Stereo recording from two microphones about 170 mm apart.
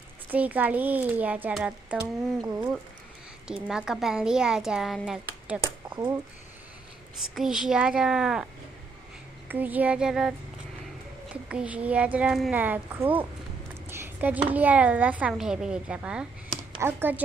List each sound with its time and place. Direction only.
0.3 s speech: 10° right (ahead or behind)
3.4 s a woman's voice: 5° right (ahead or behind)
5.9 s speech: 20° right (ahead or behind)
7.2 s a woman's voice: centre (ahead or behind)
9.5 s speech: 10° right (ahead or behind)
11.4 s a woman's voice: 5° right (ahead or behind)